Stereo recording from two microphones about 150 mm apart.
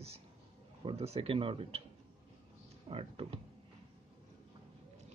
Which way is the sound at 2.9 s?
40° right (ahead or behind).